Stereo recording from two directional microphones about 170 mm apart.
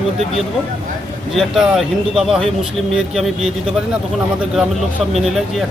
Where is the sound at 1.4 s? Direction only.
Centre (ahead or behind).